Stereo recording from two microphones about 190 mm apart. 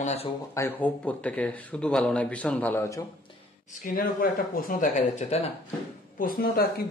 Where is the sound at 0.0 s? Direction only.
35° left (ahead or behind).